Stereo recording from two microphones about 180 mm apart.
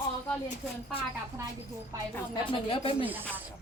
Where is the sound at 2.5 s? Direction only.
30° left (ahead or behind).